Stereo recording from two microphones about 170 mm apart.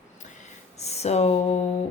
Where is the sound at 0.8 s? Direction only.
40° left (ahead or behind).